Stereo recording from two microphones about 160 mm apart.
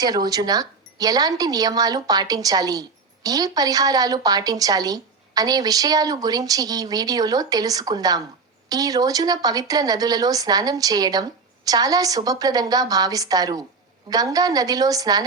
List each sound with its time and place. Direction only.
0.0 s a woman's voice: 25° right (ahead or behind)